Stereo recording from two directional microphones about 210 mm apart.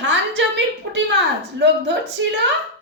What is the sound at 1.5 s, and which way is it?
Speech, 60° right (ahead or behind).